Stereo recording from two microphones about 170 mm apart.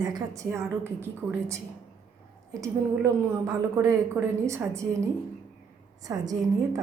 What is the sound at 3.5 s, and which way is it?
A woman's voice, 20° right (ahead or behind).